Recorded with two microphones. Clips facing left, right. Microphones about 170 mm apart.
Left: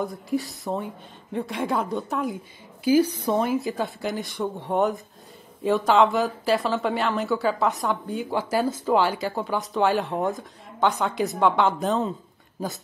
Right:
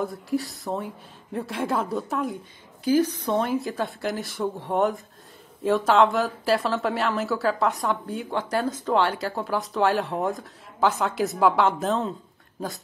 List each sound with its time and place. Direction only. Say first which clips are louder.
0.0 s a woman's voice: even; centre (ahead or behind)